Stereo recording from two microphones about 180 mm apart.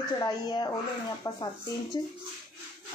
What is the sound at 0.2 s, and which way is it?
Speech, 25° left (ahead or behind).